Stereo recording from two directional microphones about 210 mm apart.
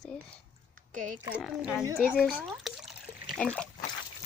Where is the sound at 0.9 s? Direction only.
35° right (ahead or behind).